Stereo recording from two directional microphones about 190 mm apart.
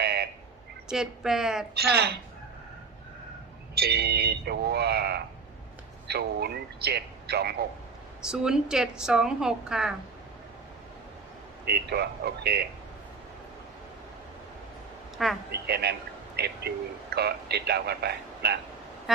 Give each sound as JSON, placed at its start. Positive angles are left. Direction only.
{"t": 0.0, "sound": "a sound", "side_deg": -60}
{"t": 0.9, "sound": "a woman's voice", "side_deg": -5}
{"t": 1.7, "sound": "a man's voice", "side_deg": -60}
{"t": 3.8, "sound": "a man's voice", "side_deg": -55}
{"t": 8.2, "sound": "a woman's voice", "side_deg": -5}
{"t": 11.6, "sound": "a man's voice", "side_deg": -55}
{"t": 15.2, "sound": "a woman's voice", "side_deg": 0}
{"t": 15.5, "sound": "a man's voice", "side_deg": -60}